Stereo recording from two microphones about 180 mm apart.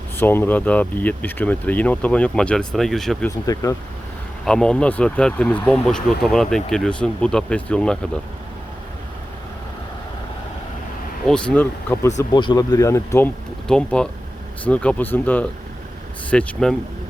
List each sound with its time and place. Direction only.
0.2 s speech: 10° left (ahead or behind)
3.2 s speech: 20° left (ahead or behind)
4.4 s speech: 5° left (ahead or behind)
11.3 s speech: 5° left (ahead or behind)